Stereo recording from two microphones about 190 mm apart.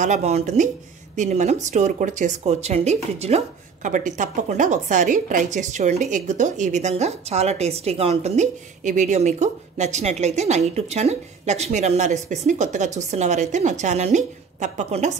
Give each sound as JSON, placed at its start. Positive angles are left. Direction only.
{"t": 0.0, "sound": "speech", "side_deg": -35}